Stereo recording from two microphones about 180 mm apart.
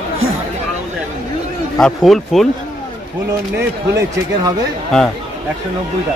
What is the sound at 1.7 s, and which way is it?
Speech, centre (ahead or behind).